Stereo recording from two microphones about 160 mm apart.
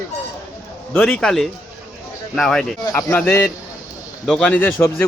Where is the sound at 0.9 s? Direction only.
5° left (ahead or behind).